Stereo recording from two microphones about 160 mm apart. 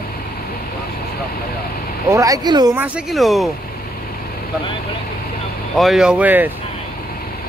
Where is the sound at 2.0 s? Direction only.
20° right (ahead or behind).